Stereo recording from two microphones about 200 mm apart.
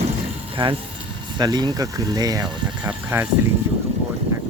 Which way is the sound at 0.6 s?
25° right (ahead or behind).